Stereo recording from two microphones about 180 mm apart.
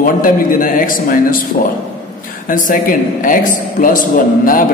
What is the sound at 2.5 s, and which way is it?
A man's voice, 50° left (ahead or behind).